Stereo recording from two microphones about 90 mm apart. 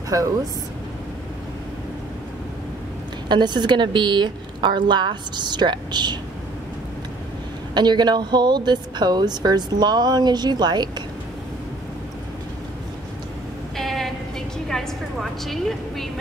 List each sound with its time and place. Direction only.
0.1 s speech: 40° right (ahead or behind)
3.3 s a woman's voice: 55° right (ahead or behind)
7.7 s speech: 55° right (ahead or behind)
13.7 s a sound: 5° left (ahead or behind)
14.7 s a woman's voice: 5° left (ahead or behind)